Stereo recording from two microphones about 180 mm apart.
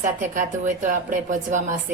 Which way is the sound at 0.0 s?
45° right (ahead or behind).